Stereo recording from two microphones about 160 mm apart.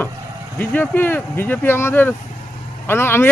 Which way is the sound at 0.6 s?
10° left (ahead or behind).